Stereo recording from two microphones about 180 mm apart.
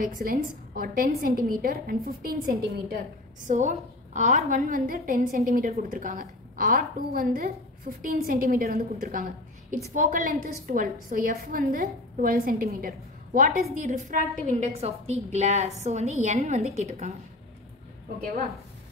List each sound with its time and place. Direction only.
0.0 s a woman's voice: 55° right (ahead or behind)
3.4 s a woman's voice: 40° right (ahead or behind)